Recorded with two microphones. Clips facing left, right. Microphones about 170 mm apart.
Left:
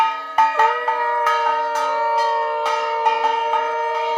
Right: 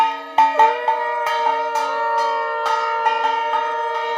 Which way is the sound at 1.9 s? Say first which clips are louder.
Left 2 dB; 10° left (ahead or behind).